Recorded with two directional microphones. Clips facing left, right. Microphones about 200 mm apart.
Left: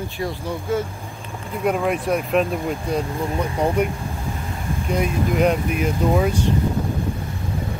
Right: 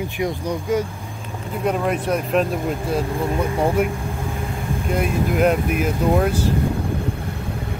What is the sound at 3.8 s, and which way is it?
Speech, 5° right (ahead or behind).